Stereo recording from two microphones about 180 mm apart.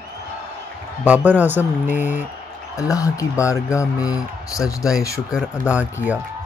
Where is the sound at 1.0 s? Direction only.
10° right (ahead or behind).